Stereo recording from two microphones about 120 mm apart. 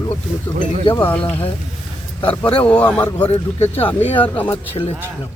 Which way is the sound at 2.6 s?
10° left (ahead or behind).